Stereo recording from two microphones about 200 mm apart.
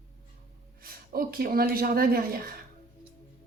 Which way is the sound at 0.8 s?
45° right (ahead or behind).